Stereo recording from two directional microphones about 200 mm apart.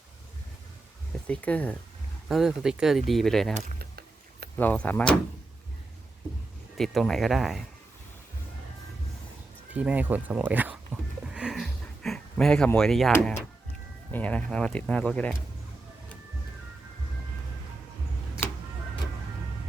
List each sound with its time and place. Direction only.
1.3 s speech: 5° left (ahead or behind)
3.8 s a sound: 50° right (ahead or behind)
4.5 s speech: 10° left (ahead or behind)
6.7 s speech: centre (ahead or behind)
9.7 s speech: 10° right (ahead or behind)
11.3 s a sound: 5° right (ahead or behind)
14.1 s speech: 5° left (ahead or behind)